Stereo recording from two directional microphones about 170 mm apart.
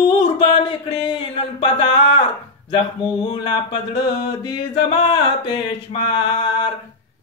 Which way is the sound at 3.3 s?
25° left (ahead or behind).